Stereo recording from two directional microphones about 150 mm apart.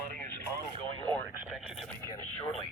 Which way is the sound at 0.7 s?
35° right (ahead or behind).